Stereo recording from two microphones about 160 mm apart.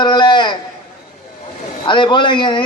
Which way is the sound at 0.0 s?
30° left (ahead or behind).